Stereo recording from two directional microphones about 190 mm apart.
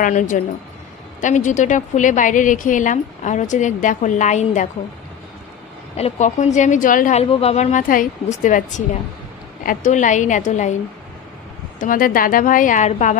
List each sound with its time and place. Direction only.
0.0 s a woman's voice: 40° left (ahead or behind)
5.9 s a woman's voice: 35° left (ahead or behind)
11.8 s a woman's voice: 45° left (ahead or behind)